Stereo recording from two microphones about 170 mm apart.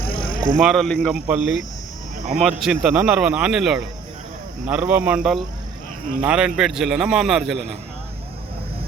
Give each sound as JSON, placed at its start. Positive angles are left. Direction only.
{"t": 0.0, "sound": "music", "side_deg": 60}
{"t": 0.6, "sound": "a man's voice", "side_deg": 0}